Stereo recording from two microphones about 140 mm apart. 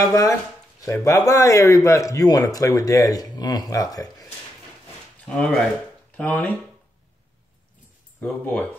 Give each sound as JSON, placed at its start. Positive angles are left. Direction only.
{"t": 0.1, "sound": "speech", "side_deg": 25}
{"t": 5.3, "sound": "speech", "side_deg": 5}
{"t": 8.2, "sound": "speech", "side_deg": 10}